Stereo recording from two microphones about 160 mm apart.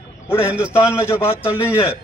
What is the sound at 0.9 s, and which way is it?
Speech, 15° left (ahead or behind).